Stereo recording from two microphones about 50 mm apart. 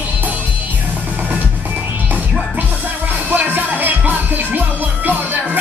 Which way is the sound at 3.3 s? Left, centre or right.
Right.